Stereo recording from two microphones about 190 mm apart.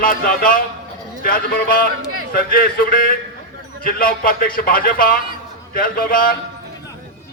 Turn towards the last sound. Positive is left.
turn(degrees=50)  # may be behind; listen again after turning